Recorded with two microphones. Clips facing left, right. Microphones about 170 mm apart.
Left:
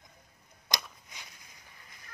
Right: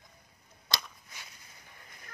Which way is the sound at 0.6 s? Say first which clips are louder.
Left 1 dB; 15° left (ahead or behind).